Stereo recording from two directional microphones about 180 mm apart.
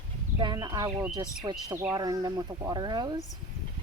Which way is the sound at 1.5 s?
15° right (ahead or behind).